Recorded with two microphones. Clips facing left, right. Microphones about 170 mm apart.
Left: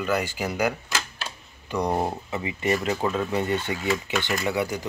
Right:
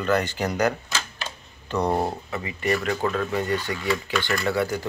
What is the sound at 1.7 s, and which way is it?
Speech, 15° left (ahead or behind).